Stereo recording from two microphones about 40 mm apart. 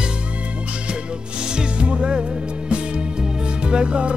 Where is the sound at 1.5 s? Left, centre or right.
Right.